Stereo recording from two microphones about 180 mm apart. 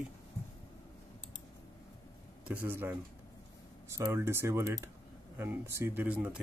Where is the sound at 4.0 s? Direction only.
15° right (ahead or behind).